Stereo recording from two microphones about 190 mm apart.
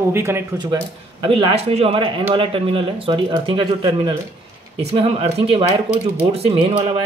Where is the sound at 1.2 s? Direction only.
30° right (ahead or behind).